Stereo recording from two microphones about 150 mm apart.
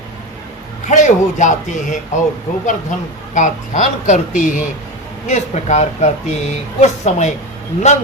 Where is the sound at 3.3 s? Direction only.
55° left (ahead or behind).